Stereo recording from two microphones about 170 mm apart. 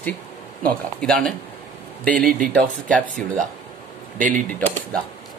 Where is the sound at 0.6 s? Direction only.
5° left (ahead or behind).